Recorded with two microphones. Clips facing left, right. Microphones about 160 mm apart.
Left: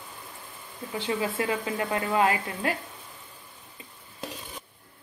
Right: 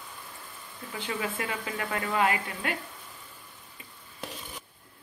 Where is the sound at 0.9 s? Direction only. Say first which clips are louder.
Left 5 dB; 30° left (ahead or behind).